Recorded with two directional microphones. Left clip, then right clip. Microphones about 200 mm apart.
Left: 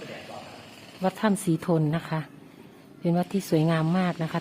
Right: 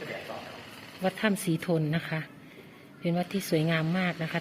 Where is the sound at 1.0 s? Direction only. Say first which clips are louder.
Left 3 dB; 15° left (ahead or behind).